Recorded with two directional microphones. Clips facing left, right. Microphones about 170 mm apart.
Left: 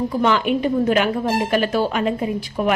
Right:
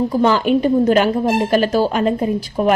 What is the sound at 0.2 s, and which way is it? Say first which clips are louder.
A woman's voice: right 4 dB; 35° right (ahead or behind).